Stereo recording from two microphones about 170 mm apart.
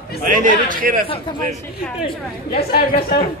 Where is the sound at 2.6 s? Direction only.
65° left (ahead or behind).